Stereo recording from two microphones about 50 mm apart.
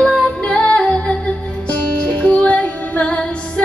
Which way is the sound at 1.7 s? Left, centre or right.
Left.